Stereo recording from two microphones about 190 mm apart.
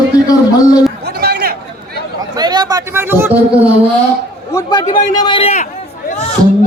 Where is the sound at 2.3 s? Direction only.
20° right (ahead or behind).